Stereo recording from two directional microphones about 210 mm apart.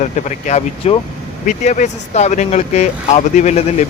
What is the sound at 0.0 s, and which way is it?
Speech, 35° left (ahead or behind).